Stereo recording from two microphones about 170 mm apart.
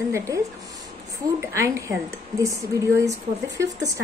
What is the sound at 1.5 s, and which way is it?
A woman's voice, 15° right (ahead or behind).